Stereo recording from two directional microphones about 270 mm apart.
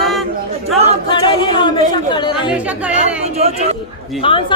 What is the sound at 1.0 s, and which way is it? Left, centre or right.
A woman's voice, centre.